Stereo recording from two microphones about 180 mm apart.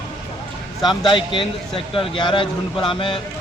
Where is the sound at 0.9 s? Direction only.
25° left (ahead or behind).